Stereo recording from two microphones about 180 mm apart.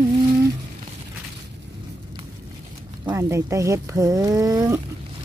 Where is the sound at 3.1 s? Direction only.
15° right (ahead or behind).